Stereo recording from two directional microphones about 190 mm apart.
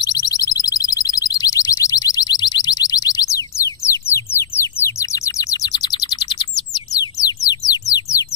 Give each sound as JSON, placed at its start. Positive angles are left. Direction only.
{"t": 0.0, "sound": "alarm", "side_deg": 20}